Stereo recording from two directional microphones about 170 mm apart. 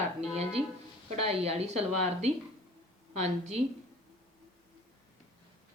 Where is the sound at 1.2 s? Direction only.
35° right (ahead or behind).